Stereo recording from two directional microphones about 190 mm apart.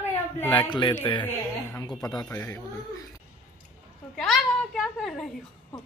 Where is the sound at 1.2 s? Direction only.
10° left (ahead or behind).